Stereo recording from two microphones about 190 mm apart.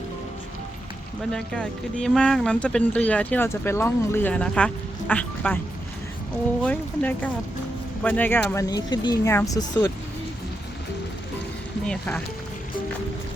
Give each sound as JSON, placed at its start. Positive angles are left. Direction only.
{"t": 1.3, "sound": "speech", "side_deg": 5}
{"t": 6.7, "sound": "speech", "side_deg": 10}
{"t": 11.9, "sound": "speech", "side_deg": 5}